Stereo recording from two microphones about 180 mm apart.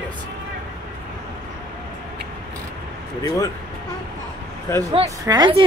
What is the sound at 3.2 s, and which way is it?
Speech, 20° left (ahead or behind).